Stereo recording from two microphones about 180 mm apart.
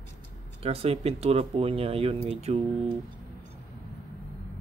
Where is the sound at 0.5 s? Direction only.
35° right (ahead or behind).